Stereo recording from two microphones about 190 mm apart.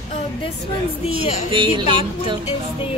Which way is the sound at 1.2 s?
35° left (ahead or behind).